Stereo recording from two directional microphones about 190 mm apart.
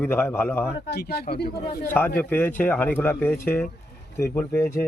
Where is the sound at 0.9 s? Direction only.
55° left (ahead or behind).